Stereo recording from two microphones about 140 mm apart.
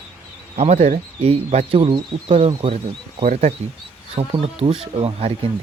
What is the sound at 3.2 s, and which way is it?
Speech, 55° right (ahead or behind).